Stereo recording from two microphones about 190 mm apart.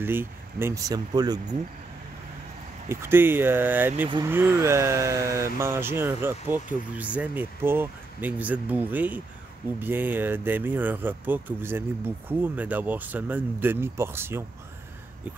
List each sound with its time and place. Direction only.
0.0 s speech: 10° right (ahead or behind)
2.9 s speech: 10° right (ahead or behind)